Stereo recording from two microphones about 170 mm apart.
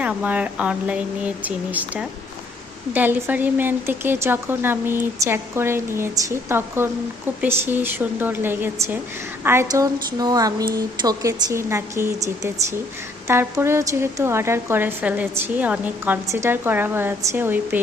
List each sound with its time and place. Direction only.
0.0 s a woman's voice: 5° right (ahead or behind)